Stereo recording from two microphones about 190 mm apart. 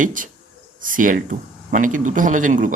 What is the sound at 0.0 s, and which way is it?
Speech, 45° right (ahead or behind).